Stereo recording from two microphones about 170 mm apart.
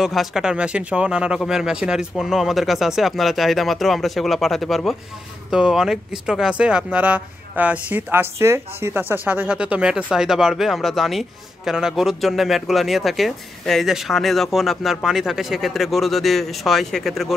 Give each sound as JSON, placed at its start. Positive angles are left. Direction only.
{"t": 0.0, "sound": "a man's voice", "side_deg": 0}